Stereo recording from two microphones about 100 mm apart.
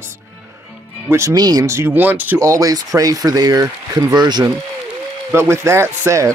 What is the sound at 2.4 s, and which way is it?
Speech, 35° right (ahead or behind).